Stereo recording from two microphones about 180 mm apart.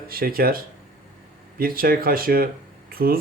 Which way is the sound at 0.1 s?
55° right (ahead or behind).